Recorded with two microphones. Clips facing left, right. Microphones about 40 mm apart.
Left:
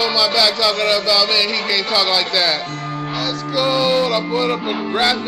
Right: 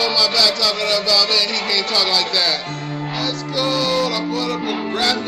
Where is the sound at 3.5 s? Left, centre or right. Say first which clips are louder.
Left 3 dB; centre.